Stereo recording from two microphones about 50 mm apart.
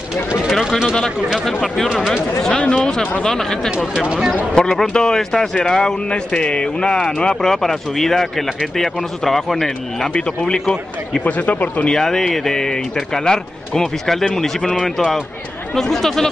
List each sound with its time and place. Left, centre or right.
0.5 s a sound: centre
1.4 s speech: centre
2.5 s speech: centre
3.9 s speech: centre
4.8 s speech: centre
10.1 s speech: centre
11.2 s speech: left
11.9 s speech: centre
14.8 s speech: centre
15.7 s speech: centre